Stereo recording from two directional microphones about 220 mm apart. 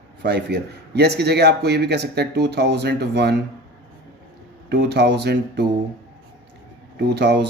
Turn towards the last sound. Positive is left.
turn(degrees=-50)  # may be behind; listen again after turning